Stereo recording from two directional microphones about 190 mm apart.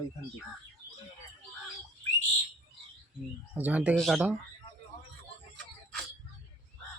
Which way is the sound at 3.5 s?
10° right (ahead or behind).